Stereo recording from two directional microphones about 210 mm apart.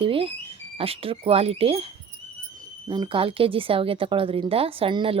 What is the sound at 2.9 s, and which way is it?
Speech, 25° right (ahead or behind).